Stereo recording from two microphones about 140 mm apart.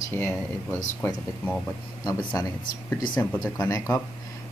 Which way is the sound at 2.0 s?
25° left (ahead or behind).